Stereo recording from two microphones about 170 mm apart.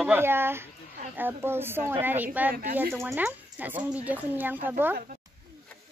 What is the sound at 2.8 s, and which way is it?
Speech, 15° right (ahead or behind).